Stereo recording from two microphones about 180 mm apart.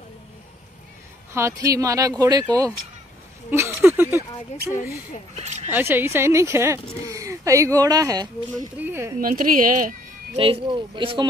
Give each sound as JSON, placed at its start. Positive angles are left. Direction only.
{"t": 1.3, "sound": "speech", "side_deg": -15}
{"t": 5.4, "sound": "a sound", "side_deg": -40}
{"t": 5.7, "sound": "a woman's voice", "side_deg": -10}
{"t": 9.2, "sound": "a woman's voice", "side_deg": -50}
{"t": 10.3, "sound": "speech", "side_deg": -30}